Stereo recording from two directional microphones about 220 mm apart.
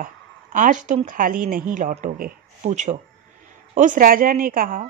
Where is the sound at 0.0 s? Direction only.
35° right (ahead or behind).